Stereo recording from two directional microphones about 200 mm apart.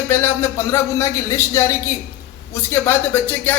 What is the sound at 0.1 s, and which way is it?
Speech, 10° left (ahead or behind).